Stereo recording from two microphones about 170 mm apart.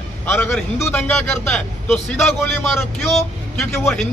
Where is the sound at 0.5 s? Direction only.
5° left (ahead or behind).